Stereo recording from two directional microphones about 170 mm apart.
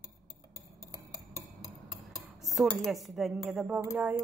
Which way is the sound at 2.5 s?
Centre (ahead or behind).